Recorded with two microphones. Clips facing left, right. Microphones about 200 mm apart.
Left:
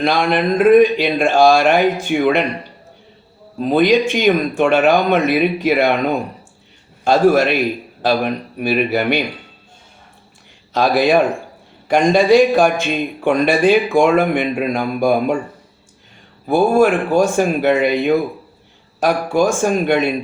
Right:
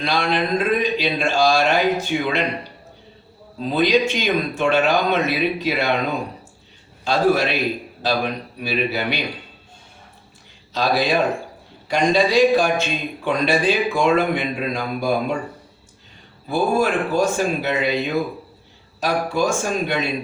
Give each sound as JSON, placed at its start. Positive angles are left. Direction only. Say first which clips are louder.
{"t": 0.0, "sound": "a man's voice", "louder": "left 5 dB", "side_deg": 55}
{"t": 3.6, "sound": "a man's voice", "louder": "left 5 dB", "side_deg": 50}
{"t": 7.0, "sound": "a man's voice", "louder": "left 6 dB", "side_deg": 50}
{"t": 10.7, "sound": "a man's voice", "louder": "left 6 dB", "side_deg": 55}
{"t": 16.5, "sound": "a man's voice", "louder": "left 6 dB", "side_deg": 55}